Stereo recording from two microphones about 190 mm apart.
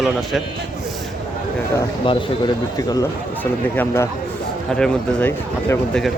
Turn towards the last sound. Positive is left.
turn(degrees=10)  # may be behind; listen again after turning